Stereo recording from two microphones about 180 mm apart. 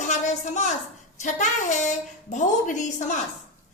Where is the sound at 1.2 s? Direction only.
40° left (ahead or behind).